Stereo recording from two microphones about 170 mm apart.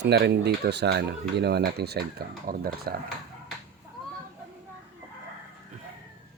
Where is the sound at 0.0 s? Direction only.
85° right; by 2.9 s 65° right (ahead or behind).